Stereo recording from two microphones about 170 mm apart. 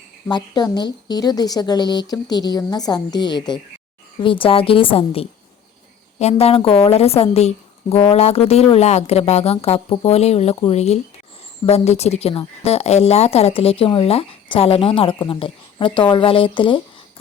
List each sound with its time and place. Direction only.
0.3 s a woman's voice: 25° left (ahead or behind)